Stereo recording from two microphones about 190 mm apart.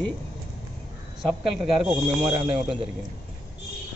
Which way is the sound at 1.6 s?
Centre (ahead or behind).